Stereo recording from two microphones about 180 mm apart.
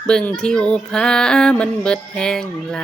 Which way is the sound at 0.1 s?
5° left (ahead or behind).